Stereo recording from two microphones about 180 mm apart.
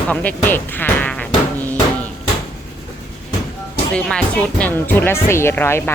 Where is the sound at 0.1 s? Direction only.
10° left (ahead or behind).